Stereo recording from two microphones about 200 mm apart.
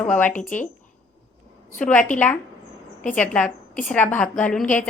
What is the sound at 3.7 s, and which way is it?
Speech, 40° left (ahead or behind).